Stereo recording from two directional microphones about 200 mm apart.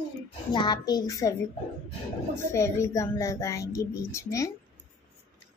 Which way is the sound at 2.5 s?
15° left (ahead or behind).